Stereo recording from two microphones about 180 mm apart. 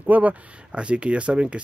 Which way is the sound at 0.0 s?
10° right (ahead or behind).